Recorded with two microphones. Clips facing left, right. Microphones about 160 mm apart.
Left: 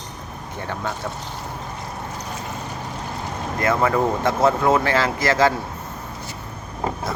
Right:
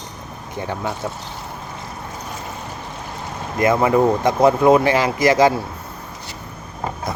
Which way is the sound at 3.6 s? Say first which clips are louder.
Right 4 dB; 15° right (ahead or behind).